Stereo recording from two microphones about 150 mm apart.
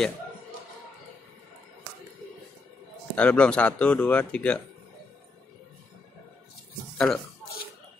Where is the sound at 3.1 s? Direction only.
5° left (ahead or behind).